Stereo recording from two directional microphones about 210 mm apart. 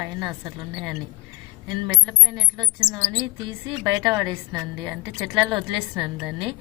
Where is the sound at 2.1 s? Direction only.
20° right (ahead or behind).